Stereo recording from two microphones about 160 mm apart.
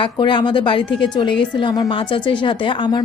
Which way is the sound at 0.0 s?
30° left (ahead or behind).